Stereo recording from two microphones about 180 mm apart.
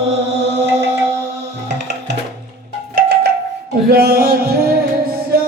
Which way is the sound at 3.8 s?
60° right (ahead or behind).